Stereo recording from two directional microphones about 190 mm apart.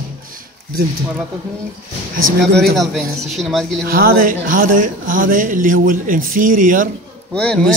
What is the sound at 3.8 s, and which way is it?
Speech, 50° right (ahead or behind).